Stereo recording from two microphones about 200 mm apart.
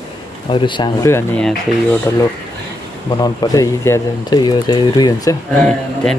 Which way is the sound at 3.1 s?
20° left (ahead or behind).